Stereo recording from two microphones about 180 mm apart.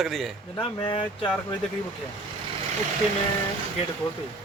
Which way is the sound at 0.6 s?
30° left (ahead or behind).